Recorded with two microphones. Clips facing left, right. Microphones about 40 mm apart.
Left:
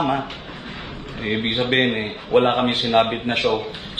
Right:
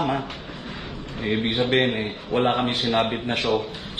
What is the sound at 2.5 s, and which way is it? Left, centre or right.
A man's voice, left.